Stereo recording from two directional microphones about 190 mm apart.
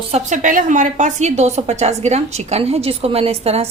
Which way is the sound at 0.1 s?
40° right (ahead or behind).